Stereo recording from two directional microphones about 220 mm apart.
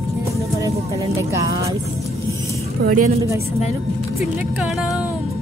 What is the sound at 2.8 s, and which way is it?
Speech, 45° right (ahead or behind).